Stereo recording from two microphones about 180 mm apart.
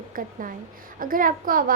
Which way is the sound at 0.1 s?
50° right (ahead or behind).